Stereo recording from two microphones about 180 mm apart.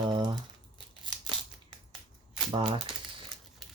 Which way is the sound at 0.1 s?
25° right (ahead or behind).